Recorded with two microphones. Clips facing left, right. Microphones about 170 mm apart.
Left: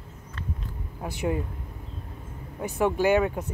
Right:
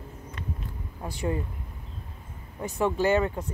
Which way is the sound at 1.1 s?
15° left (ahead or behind).